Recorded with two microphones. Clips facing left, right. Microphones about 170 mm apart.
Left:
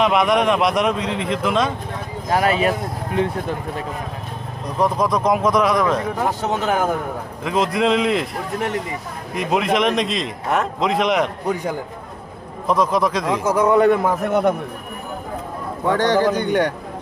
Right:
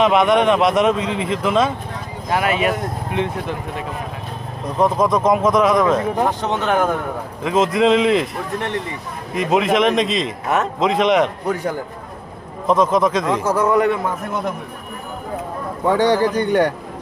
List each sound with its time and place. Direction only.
0.0 s a man's voice: centre (ahead or behind)
2.3 s speech: 35° left (ahead or behind)
4.8 s a man's voice: 5° right (ahead or behind)
12.6 s a man's voice: centre (ahead or behind)
13.4 s speech: 10° left (ahead or behind)
14.3 s a man's voice: 70° left (ahead or behind)
15.9 s a man's voice: 10° right (ahead or behind)